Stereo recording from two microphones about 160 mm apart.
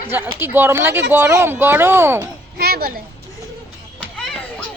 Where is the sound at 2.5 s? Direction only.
75° right (ahead or behind).